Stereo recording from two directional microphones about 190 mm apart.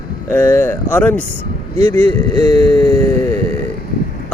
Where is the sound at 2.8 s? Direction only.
20° left (ahead or behind).